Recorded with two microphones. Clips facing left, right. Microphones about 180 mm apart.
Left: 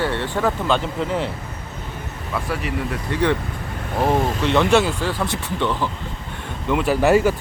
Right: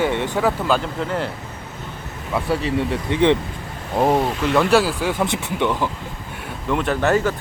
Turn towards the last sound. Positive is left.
turn(degrees=10)  # may be behind; listen again after turning